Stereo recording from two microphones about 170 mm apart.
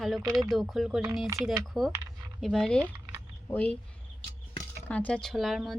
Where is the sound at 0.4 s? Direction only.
Centre (ahead or behind).